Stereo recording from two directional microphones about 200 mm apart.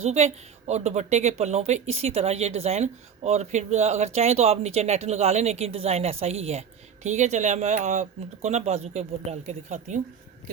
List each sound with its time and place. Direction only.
0.0 s a woman's voice: 35° right (ahead or behind)